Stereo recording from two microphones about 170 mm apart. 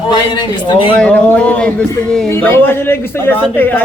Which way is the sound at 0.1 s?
25° left (ahead or behind).